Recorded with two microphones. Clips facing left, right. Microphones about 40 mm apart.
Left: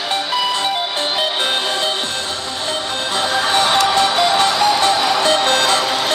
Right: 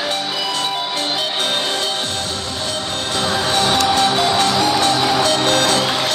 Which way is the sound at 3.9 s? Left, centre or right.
Centre.